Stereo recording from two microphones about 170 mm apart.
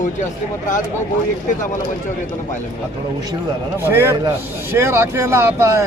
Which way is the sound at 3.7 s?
15° right (ahead or behind).